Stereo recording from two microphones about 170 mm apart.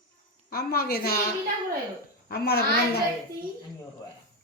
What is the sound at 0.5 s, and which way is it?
Speech, 65° left (ahead or behind).